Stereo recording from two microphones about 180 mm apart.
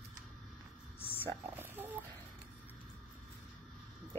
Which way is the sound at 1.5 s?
10° right (ahead or behind).